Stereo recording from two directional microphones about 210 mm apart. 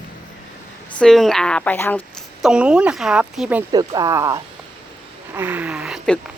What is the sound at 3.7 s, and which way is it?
Speech, 20° right (ahead or behind).